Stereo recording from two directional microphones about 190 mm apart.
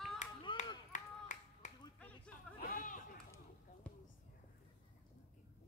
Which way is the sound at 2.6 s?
45° left (ahead or behind).